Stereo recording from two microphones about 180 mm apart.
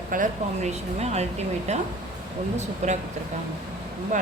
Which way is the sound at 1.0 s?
35° right (ahead or behind).